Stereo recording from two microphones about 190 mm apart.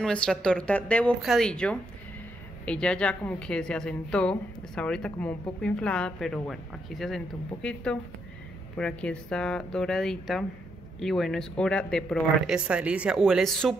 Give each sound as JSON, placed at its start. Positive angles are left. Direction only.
{"t": 0.0, "sound": "a woman's voice", "side_deg": 5}